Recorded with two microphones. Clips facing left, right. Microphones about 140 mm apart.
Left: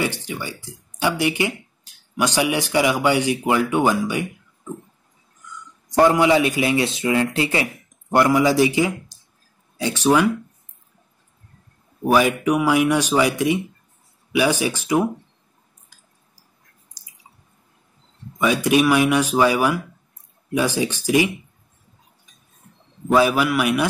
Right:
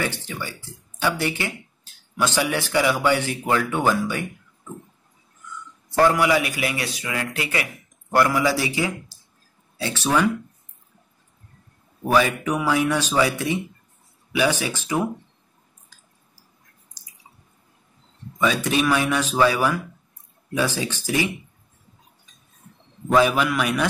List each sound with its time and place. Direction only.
0.0 s speech: 15° left (ahead or behind)
5.9 s a man's voice: 20° left (ahead or behind)
12.0 s speech: 15° left (ahead or behind)
18.4 s speech: 10° left (ahead or behind)
23.1 s speech: 5° left (ahead or behind)